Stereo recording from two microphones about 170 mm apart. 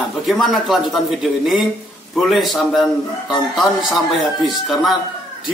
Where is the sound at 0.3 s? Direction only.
Centre (ahead or behind).